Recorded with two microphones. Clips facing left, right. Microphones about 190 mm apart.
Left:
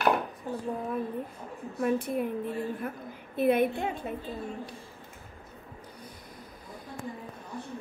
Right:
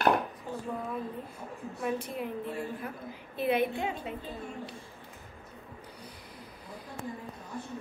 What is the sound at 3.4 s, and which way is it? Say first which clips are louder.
Speech: left 4 dB; 50° left (ahead or behind).